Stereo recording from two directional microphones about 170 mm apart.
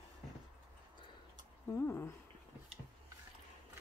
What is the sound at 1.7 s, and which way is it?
Speech, 15° left (ahead or behind).